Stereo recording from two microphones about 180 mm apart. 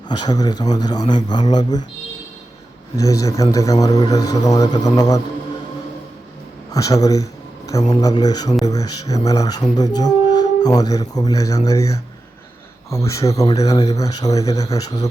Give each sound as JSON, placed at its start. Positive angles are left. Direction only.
{"t": 0.1, "sound": "speech", "side_deg": 20}
{"t": 2.9, "sound": "speech", "side_deg": 20}
{"t": 6.7, "sound": "speech", "side_deg": 20}